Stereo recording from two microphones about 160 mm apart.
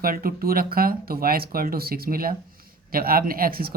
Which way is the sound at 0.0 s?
65° right (ahead or behind).